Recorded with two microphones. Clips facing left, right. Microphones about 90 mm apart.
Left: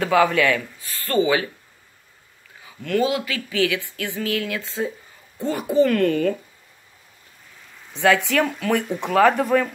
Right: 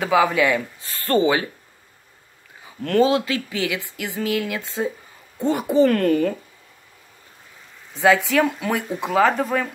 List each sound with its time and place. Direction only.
0.0 s speech: 10° right (ahead or behind)
0.8 s speech: 30° right (ahead or behind)
2.8 s speech: 35° right (ahead or behind)
7.9 s speech: 5° right (ahead or behind)